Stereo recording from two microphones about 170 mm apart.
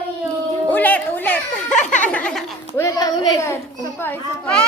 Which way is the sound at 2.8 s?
20° left (ahead or behind).